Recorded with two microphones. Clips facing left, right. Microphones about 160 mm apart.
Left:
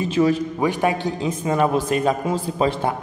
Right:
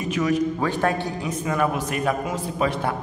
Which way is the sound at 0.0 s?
30° left (ahead or behind).